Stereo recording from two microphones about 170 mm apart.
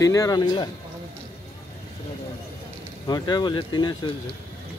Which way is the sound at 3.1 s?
25° left (ahead or behind).